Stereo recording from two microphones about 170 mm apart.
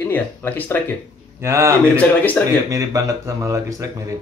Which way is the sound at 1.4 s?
15° right (ahead or behind).